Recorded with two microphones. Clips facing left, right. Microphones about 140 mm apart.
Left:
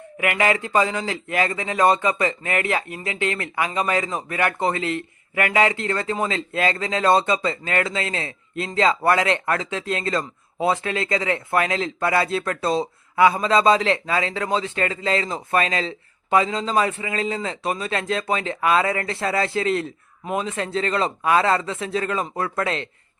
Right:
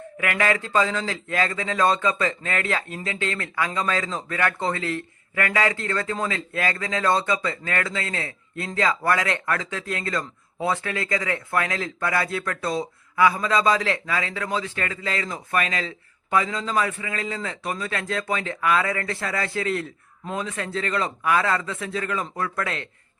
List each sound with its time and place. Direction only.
0.2 s a man's voice: 15° left (ahead or behind)